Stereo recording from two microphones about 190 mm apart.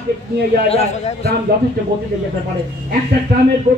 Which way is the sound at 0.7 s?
35° left (ahead or behind).